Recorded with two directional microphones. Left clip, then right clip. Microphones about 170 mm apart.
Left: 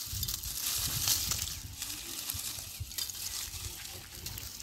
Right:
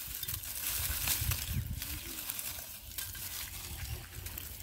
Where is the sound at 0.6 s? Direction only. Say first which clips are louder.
Left 4 dB; 15° right (ahead or behind).